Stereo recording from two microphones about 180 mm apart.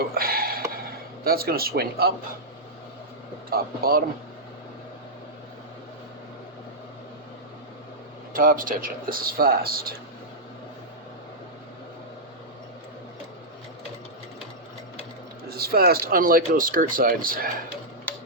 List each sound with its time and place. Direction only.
0.1 s a sound: 55° right (ahead or behind)
3.5 s speech: 55° right (ahead or behind)
8.4 s speech: 50° right (ahead or behind)
15.4 s speech: 60° right (ahead or behind)